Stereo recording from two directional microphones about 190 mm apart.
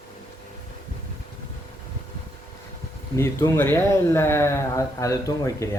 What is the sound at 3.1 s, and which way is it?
Speech, 15° left (ahead or behind).